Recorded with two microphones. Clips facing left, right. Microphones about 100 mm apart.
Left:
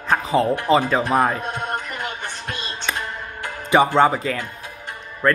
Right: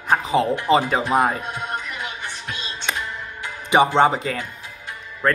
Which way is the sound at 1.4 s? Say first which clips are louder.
Left 2 dB; 50° left (ahead or behind).